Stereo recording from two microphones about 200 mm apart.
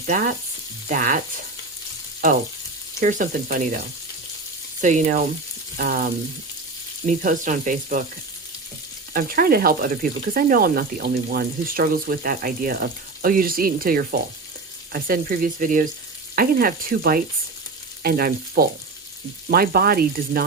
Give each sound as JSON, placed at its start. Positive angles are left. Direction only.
{"t": 0.0, "sound": "speech", "side_deg": -40}
{"t": 3.0, "sound": "speech", "side_deg": -40}
{"t": 7.1, "sound": "speech", "side_deg": -40}
{"t": 9.1, "sound": "speech", "side_deg": -50}